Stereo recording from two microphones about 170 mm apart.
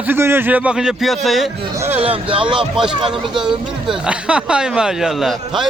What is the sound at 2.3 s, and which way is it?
Speech, 30° right (ahead or behind).